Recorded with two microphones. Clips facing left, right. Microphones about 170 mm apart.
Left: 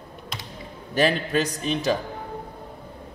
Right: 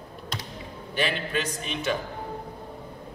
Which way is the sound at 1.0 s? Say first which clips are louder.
Left 6 dB; 40° left (ahead or behind).